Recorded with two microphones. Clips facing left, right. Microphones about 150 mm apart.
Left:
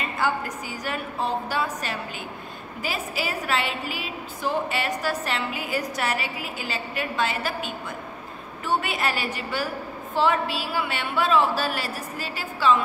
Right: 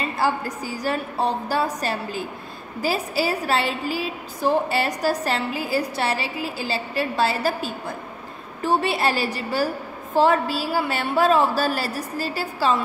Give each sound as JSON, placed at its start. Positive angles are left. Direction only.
{"t": 0.0, "sound": "a woman's voice", "side_deg": -35}